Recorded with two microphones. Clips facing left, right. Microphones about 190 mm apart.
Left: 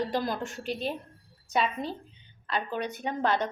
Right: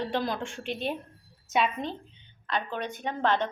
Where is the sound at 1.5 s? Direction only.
5° left (ahead or behind).